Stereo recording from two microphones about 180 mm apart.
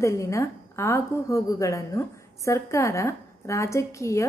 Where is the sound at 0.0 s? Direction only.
15° left (ahead or behind).